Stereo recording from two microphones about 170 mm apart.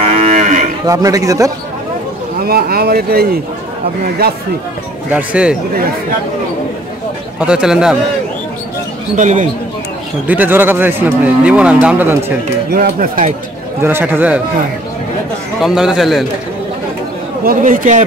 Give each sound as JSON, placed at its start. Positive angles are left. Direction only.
{"t": 0.0, "sound": "moo", "side_deg": -40}
{"t": 0.8, "sound": "a man's voice", "side_deg": -20}
{"t": 2.4, "sound": "speech", "side_deg": -65}
{"t": 5.1, "sound": "speech", "side_deg": -5}
{"t": 7.3, "sound": "speech", "side_deg": -5}
{"t": 9.1, "sound": "a man's voice", "side_deg": -45}
{"t": 10.2, "sound": "speech", "side_deg": -10}
{"t": 12.7, "sound": "speech", "side_deg": -60}
{"t": 13.8, "sound": "speech", "side_deg": -10}
{"t": 15.6, "sound": "speech", "side_deg": -5}
{"t": 17.5, "sound": "a man's voice", "side_deg": -55}